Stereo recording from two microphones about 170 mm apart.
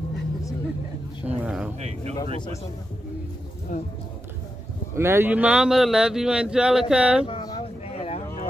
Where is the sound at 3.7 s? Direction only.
50° left (ahead or behind).